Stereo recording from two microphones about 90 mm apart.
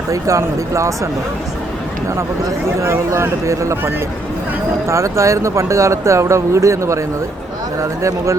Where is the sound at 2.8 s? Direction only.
30° right (ahead or behind).